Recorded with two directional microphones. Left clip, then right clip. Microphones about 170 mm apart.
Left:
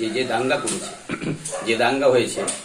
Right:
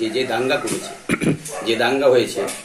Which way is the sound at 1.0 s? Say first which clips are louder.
Right 9 dB; 90° right.